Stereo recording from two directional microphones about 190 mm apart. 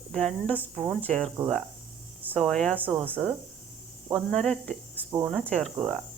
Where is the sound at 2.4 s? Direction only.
5° left (ahead or behind).